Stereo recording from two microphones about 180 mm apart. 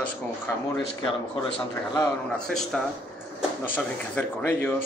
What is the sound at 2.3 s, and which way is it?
A man's voice, 5° left (ahead or behind).